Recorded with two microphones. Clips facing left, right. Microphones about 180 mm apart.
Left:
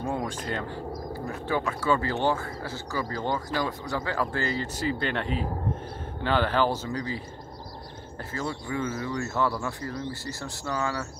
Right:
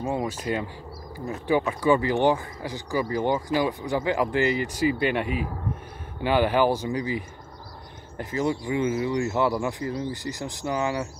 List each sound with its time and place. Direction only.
0.1 s speech: 5° right (ahead or behind)
1.7 s speech: 15° right (ahead or behind)